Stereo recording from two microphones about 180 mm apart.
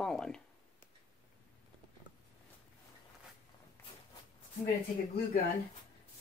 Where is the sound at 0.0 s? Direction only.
5° left (ahead or behind).